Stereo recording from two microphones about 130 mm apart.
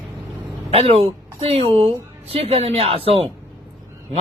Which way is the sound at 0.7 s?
50° right (ahead or behind).